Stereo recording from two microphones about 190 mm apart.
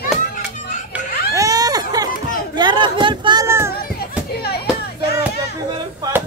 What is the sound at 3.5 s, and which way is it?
Children playing, 15° right (ahead or behind).